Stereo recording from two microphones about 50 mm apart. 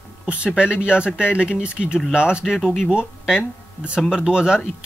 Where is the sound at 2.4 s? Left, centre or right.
Centre.